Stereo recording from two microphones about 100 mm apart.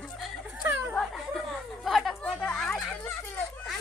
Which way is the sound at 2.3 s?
10° left (ahead or behind).